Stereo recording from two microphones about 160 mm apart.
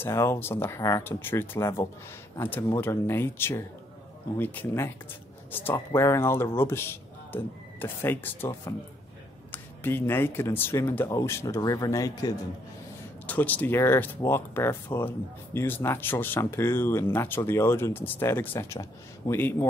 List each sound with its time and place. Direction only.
0.0 s speech: 15° left (ahead or behind)
13.3 s speech: 10° left (ahead or behind)